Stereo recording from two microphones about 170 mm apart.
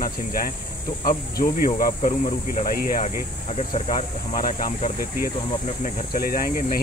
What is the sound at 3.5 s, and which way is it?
Speech, 40° left (ahead or behind).